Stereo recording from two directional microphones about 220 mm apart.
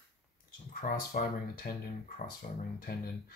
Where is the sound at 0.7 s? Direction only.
40° left (ahead or behind).